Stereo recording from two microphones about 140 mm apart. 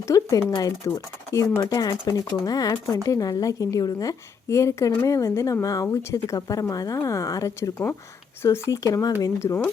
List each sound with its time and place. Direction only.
0.0 s speech: 25° left (ahead or behind)